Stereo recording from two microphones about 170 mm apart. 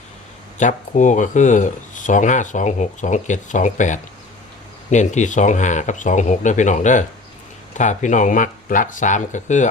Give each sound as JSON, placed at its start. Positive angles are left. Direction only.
{"t": 0.6, "sound": "speech", "side_deg": 45}